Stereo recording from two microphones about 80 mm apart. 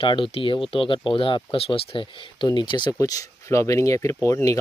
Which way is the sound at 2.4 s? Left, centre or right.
Left.